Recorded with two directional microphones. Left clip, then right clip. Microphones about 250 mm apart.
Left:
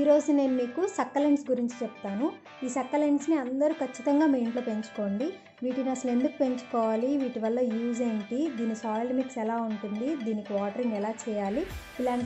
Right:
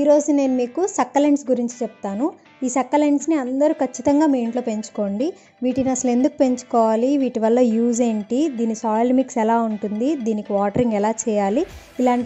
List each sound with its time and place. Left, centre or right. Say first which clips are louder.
0.3 s a woman's voice: right 7 dB; right